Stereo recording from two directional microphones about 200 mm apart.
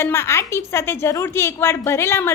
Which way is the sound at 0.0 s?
15° left (ahead or behind).